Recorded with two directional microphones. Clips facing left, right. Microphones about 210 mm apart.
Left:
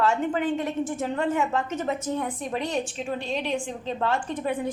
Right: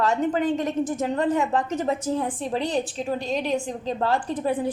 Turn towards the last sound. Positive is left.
turn(degrees=-35)  # may be behind; listen again after turning